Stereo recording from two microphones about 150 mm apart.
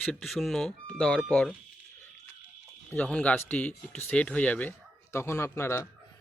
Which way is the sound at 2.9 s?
10° left (ahead or behind).